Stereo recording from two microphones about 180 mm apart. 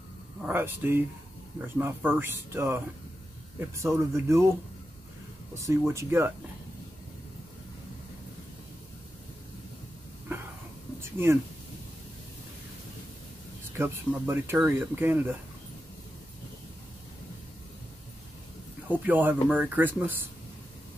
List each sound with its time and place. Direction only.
0.4 s speech: 10° right (ahead or behind)
5.5 s speech: 15° right (ahead or behind)
11.0 s a sound: 15° right (ahead or behind)
13.7 s speech: 15° right (ahead or behind)
18.9 s speech: 10° right (ahead or behind)